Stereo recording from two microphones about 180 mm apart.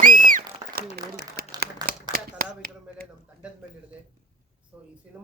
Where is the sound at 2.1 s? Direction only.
55° right (ahead or behind).